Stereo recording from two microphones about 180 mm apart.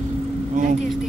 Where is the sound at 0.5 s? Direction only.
45° right (ahead or behind).